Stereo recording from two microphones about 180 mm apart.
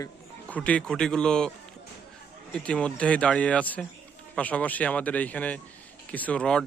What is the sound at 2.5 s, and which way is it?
Speech, 5° left (ahead or behind).